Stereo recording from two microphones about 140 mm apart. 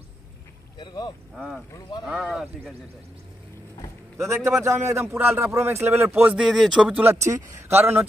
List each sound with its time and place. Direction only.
0.7 s boat: 30° left (ahead or behind)
1.3 s speech: centre (ahead or behind)
1.7 s speech: 30° left (ahead or behind)
2.0 s speech: 5° right (ahead or behind)
4.2 s a man's voice: 20° right (ahead or behind)